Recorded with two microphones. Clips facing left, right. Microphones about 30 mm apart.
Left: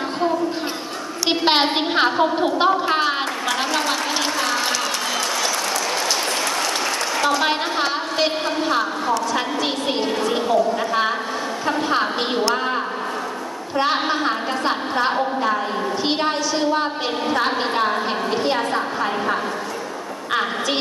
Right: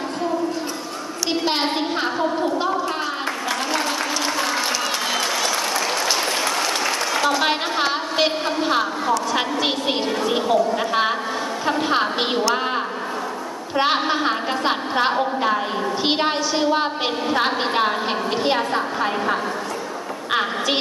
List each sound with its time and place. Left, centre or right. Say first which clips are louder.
1.4 s a sound: left 5 dB; left
4.4 s applause: left 1 dB; centre
11.9 s a woman's voice: even; centre
12.5 s a sound: even; centre
13.9 s a woman's voice: even; centre
17.5 s a woman's voice: even; centre